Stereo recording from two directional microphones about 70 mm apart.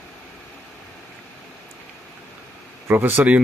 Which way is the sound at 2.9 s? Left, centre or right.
Right.